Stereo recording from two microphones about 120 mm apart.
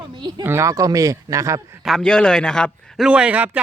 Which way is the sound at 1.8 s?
Centre (ahead or behind).